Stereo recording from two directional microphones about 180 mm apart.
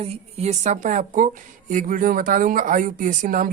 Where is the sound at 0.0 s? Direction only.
35° right (ahead or behind).